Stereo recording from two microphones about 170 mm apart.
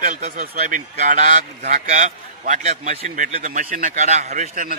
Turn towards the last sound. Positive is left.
turn(degrees=-50)  # may be behind; listen again after turning